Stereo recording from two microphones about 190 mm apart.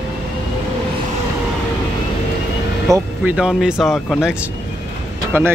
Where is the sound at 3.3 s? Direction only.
5° right (ahead or behind).